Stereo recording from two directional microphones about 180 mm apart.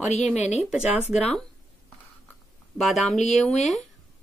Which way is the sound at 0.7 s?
5° right (ahead or behind).